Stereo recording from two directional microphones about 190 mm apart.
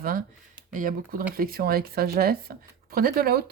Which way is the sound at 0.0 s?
50° right (ahead or behind).